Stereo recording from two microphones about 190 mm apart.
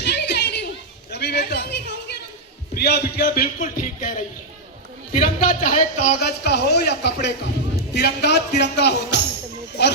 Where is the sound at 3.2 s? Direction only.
50° left (ahead or behind).